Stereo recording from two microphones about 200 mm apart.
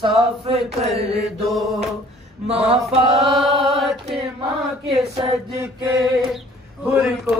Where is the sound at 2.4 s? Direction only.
30° right (ahead or behind).